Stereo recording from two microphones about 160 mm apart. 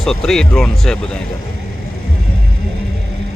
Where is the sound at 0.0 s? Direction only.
Centre (ahead or behind).